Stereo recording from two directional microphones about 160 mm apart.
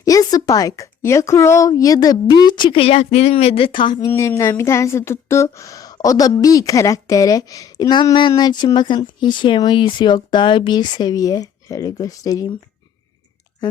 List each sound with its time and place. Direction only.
0.0 s speech: 20° left (ahead or behind)
4.1 s speech: 20° left (ahead or behind)